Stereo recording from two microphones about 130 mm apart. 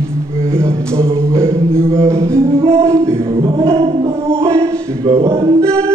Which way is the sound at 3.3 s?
40° right (ahead or behind).